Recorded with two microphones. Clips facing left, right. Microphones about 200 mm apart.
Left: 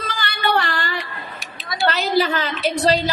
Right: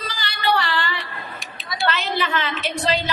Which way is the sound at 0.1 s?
55° left (ahead or behind).